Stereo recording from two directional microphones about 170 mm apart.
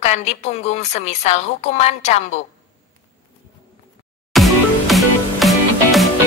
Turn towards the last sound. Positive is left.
turn(degrees=0)  # may be behind; listen again after turning